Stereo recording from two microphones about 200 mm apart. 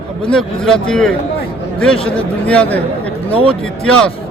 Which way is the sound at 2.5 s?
5° left (ahead or behind).